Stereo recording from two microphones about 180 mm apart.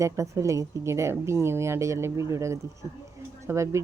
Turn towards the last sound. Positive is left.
turn(degrees=-15)  # may be behind; listen again after turning